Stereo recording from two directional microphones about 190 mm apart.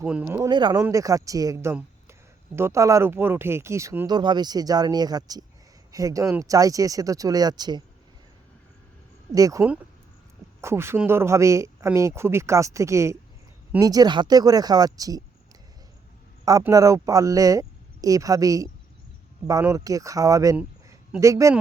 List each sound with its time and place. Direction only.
0.0 s speech: 5° right (ahead or behind)
9.3 s speech: 15° right (ahead or behind)
16.5 s speech: 20° right (ahead or behind)